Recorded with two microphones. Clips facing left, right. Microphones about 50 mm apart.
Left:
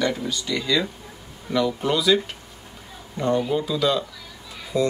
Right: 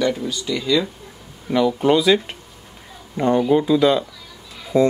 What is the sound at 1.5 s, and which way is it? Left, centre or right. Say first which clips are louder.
Speech: right 6 dB; centre.